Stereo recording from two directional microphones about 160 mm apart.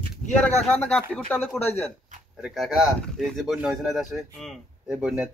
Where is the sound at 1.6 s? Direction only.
40° left (ahead or behind).